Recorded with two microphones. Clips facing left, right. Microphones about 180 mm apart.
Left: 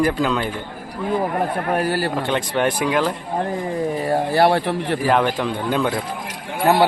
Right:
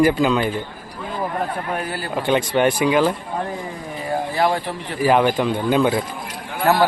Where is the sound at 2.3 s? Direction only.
Centre (ahead or behind).